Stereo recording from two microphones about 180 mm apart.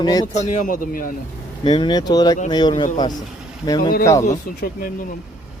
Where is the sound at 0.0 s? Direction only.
20° left (ahead or behind).